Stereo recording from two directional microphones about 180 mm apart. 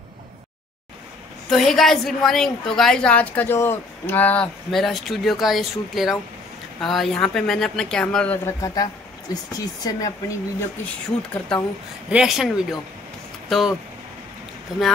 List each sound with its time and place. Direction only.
1.5 s a woman's voice: centre (ahead or behind)
8.5 s speech: 20° left (ahead or behind)
11.5 s a woman's voice: 5° left (ahead or behind)
13.5 s speech: centre (ahead or behind)